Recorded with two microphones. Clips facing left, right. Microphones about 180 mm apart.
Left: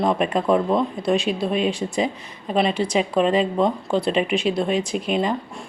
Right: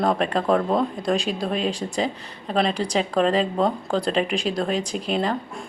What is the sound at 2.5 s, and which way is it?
A woman's voice, 5° left (ahead or behind).